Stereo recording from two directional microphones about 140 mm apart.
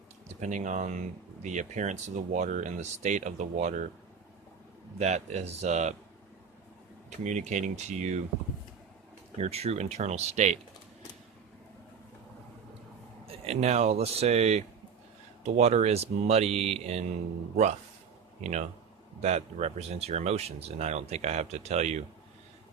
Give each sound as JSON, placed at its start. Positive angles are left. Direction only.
{"t": 0.3, "sound": "speech", "side_deg": -60}
{"t": 4.9, "sound": "speech", "side_deg": -55}
{"t": 7.3, "sound": "speech", "side_deg": -60}
{"t": 9.4, "sound": "speech", "side_deg": -50}
{"t": 13.2, "sound": "speech", "side_deg": -45}
{"t": 19.2, "sound": "speech", "side_deg": -50}